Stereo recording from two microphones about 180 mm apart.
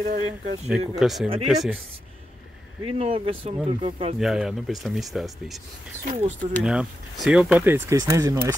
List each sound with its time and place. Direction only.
0.0 s speech: 40° right (ahead or behind)
0.7 s speech: centre (ahead or behind)
2.8 s speech: 30° right (ahead or behind)
4.2 s speech: centre (ahead or behind)
6.0 s speech: 45° right (ahead or behind)
6.6 s speech: 5° right (ahead or behind)